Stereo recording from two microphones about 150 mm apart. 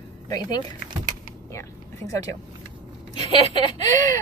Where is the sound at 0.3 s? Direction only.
25° left (ahead or behind).